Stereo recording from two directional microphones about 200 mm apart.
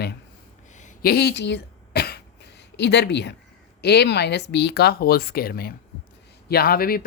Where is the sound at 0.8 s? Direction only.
50° left (ahead or behind).